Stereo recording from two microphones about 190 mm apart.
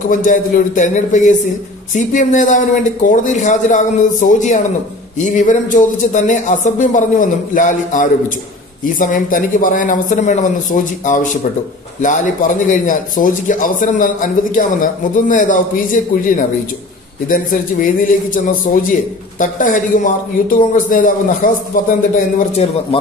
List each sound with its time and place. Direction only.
0.1 s a man's voice: 40° left (ahead or behind)